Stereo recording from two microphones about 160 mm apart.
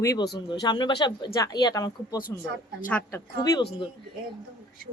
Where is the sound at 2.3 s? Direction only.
15° left (ahead or behind).